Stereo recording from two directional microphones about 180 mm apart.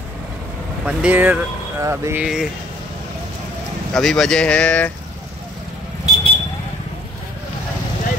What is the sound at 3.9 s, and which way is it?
Speech, 5° left (ahead or behind).